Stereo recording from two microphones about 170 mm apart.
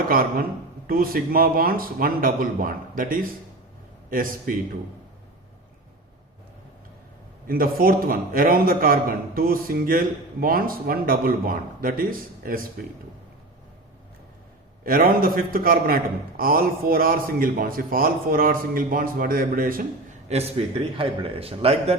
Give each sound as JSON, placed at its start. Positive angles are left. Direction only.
{"t": 0.1, "sound": "a man's voice", "side_deg": -60}
{"t": 7.4, "sound": "a man's voice", "side_deg": -60}
{"t": 14.8, "sound": "a man's voice", "side_deg": -60}
{"t": 20.3, "sound": "a man's voice", "side_deg": -35}